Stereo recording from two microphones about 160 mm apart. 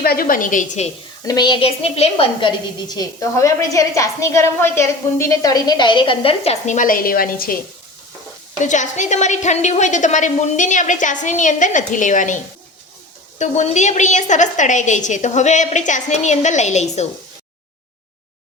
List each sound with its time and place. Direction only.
0.0 s a woman's voice: 70° left (ahead or behind)
1.2 s a woman's voice: 25° left (ahead or behind)
2.8 s a woman's voice: 25° left (ahead or behind); by 7.6 s 65° left (ahead or behind)
8.5 s a woman's voice: 50° left (ahead or behind)
13.4 s a woman's voice: 50° left (ahead or behind)